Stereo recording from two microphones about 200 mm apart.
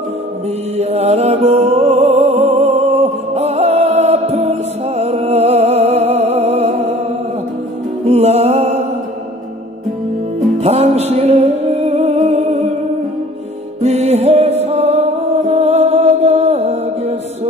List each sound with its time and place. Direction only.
0.7 s music: 30° right (ahead or behind)
8.0 s music: 30° right (ahead or behind)
10.6 s music: 30° right (ahead or behind)
13.7 s music: 35° right (ahead or behind)